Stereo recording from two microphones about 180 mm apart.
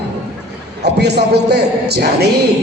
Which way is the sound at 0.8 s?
65° right (ahead or behind).